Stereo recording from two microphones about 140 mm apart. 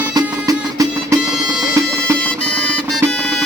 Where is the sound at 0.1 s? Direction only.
25° right (ahead or behind).